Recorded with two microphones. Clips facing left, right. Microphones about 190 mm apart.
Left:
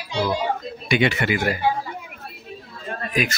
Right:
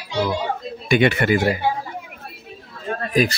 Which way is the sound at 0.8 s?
50° right (ahead or behind).